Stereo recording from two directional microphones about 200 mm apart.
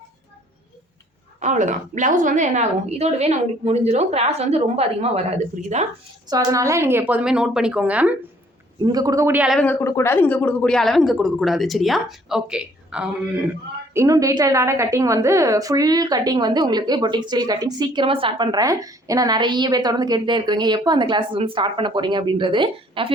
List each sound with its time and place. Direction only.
1.4 s a woman's voice: 35° right (ahead or behind)
6.2 s speech: 15° right (ahead or behind)
8.8 s speech: 20° right (ahead or behind)
9.6 s speech: 10° left (ahead or behind); by 13.1 s 5° right (ahead or behind)
13.9 s a woman's voice: 15° right (ahead or behind)